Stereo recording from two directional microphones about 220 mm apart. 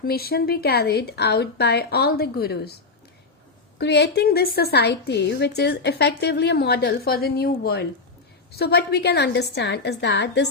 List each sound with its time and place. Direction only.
0.0 s a woman's voice: 45° left (ahead or behind)
3.8 s a woman's voice: 50° left (ahead or behind)